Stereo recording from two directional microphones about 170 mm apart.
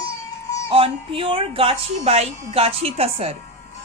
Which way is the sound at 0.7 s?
30° right (ahead or behind).